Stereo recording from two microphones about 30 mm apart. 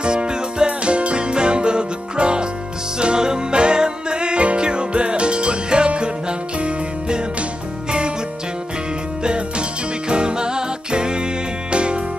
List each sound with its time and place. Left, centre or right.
0.0 s music: right
0.7 s music: right
9.2 s music: right